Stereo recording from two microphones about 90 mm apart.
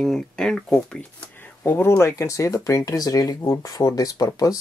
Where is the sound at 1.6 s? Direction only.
20° left (ahead or behind); by 3.3 s 45° left (ahead or behind).